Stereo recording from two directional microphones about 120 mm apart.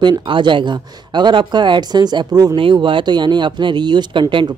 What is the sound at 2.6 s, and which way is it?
Speech, 45° right (ahead or behind).